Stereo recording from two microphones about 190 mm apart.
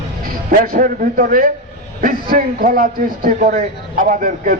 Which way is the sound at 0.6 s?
50° right (ahead or behind).